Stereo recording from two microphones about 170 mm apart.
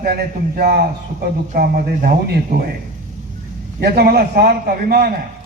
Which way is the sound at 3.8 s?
70° right (ahead or behind).